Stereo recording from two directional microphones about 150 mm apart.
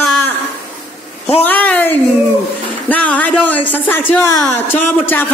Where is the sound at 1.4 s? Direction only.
10° left (ahead or behind).